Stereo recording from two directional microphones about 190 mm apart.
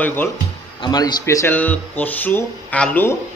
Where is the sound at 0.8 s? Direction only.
20° left (ahead or behind).